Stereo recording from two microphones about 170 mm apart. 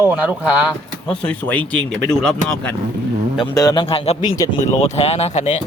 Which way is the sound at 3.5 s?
20° left (ahead or behind).